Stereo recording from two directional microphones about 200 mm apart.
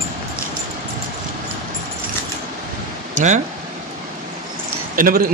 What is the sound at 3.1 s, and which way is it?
Speech, 35° right (ahead or behind).